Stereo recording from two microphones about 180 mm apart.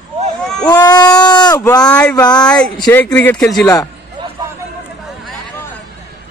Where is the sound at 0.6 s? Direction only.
20° left (ahead or behind).